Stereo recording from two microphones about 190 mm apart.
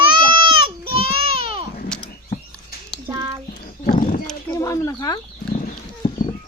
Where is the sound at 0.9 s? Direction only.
30° right (ahead or behind).